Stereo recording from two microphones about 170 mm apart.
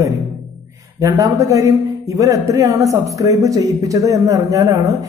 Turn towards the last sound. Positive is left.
turn(degrees=-20)  # may be behind; listen again after turning